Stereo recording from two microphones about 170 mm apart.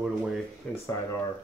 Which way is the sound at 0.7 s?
10° left (ahead or behind).